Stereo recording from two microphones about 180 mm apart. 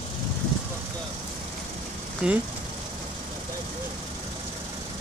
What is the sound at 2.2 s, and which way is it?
Speech, 5° right (ahead or behind).